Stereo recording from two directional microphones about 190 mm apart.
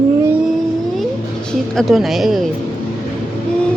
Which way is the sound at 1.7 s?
Centre (ahead or behind).